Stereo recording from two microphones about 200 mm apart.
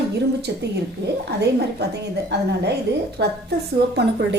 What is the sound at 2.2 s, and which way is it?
A woman's voice, 60° right (ahead or behind).